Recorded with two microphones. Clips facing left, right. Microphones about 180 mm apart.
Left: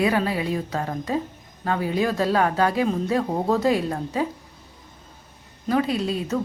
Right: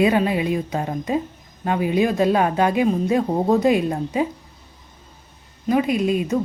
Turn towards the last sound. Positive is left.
turn(degrees=-15)  # may be behind; listen again after turning